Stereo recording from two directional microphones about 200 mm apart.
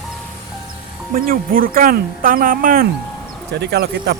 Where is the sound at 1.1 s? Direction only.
45° right (ahead or behind).